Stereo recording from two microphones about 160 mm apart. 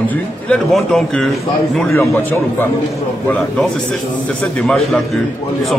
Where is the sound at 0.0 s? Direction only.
10° left (ahead or behind).